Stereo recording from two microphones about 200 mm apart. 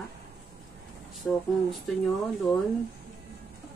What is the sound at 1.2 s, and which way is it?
Speech, centre (ahead or behind).